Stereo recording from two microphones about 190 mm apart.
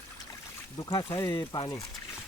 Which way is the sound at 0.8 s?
20° left (ahead or behind).